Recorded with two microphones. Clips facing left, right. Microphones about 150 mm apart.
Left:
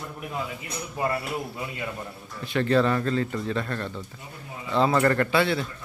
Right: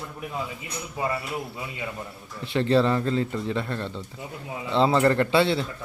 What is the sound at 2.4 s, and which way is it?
Speech, 25° right (ahead or behind).